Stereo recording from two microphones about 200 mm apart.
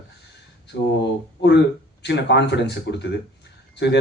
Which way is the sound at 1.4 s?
60° left (ahead or behind).